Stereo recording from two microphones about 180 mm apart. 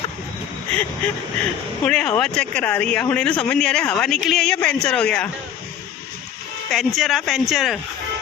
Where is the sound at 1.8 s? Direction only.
5° left (ahead or behind).